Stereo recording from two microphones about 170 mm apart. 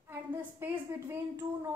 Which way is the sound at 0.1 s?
10° right (ahead or behind).